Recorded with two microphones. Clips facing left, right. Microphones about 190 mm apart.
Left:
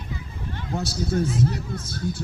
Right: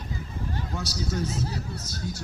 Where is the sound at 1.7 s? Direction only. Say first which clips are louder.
Left 5 dB; 55° left (ahead or behind).